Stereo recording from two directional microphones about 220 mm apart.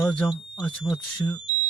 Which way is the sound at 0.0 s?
5° left (ahead or behind).